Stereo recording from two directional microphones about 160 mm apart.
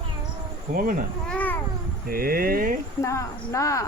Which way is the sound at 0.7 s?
65° right (ahead or behind).